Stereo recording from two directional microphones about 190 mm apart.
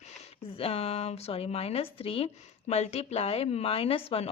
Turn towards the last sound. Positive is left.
turn(degrees=30)  # may be behind; listen again after turning